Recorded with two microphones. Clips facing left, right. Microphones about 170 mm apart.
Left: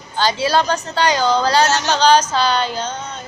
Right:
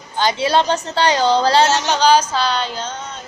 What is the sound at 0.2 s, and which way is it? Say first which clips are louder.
A woman's voice: even; 20° right (ahead or behind).